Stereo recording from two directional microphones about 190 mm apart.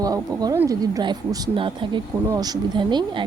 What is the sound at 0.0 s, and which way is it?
Speech, 20° right (ahead or behind).